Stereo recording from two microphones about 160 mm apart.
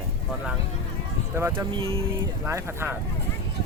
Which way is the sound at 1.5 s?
35° right (ahead or behind).